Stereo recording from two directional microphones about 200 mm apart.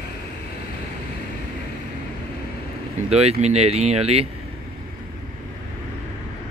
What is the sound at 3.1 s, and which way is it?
Speech, 30° right (ahead or behind).